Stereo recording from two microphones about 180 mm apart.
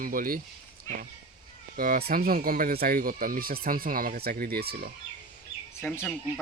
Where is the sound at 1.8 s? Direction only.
55° right (ahead or behind).